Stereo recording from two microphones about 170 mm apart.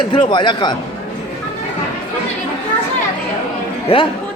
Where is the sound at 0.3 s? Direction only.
25° left (ahead or behind).